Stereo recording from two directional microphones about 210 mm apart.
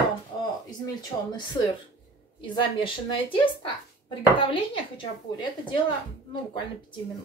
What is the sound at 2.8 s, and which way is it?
A woman's voice, 25° left (ahead or behind).